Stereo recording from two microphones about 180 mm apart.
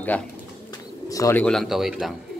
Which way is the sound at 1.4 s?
Centre (ahead or behind).